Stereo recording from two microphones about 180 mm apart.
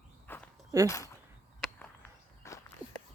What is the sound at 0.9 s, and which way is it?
Speech, 20° left (ahead or behind).